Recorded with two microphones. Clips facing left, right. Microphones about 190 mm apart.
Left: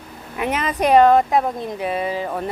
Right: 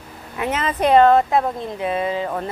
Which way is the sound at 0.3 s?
15° left (ahead or behind).